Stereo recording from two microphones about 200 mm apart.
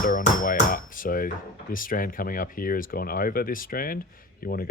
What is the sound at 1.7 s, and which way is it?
Speech, 45° left (ahead or behind).